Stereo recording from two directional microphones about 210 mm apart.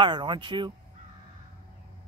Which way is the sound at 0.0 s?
20° right (ahead or behind).